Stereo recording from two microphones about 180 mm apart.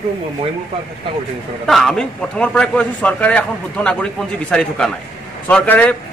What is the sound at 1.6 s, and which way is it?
A man's voice, centre (ahead or behind).